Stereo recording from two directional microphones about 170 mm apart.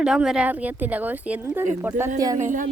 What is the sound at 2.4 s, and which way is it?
Music, 50° right (ahead or behind).